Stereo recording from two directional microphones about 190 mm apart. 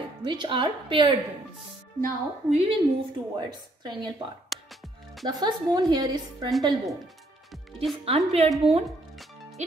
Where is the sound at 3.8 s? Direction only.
25° right (ahead or behind).